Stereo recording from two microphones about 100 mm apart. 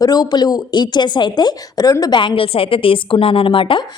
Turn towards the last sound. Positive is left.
turn(degrees=60)  # may be behind; listen again after turning